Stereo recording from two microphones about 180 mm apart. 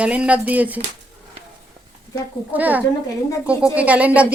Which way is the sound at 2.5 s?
10° right (ahead or behind).